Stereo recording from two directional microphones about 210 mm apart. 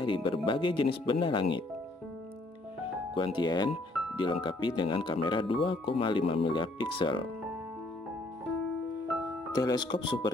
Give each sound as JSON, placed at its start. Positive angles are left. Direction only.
{"t": 0.0, "sound": "speech", "side_deg": 25}
{"t": 3.2, "sound": "speech", "side_deg": 20}
{"t": 9.5, "sound": "speech", "side_deg": 20}